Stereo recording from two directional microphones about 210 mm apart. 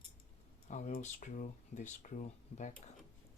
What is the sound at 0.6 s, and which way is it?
Speech, 35° left (ahead or behind).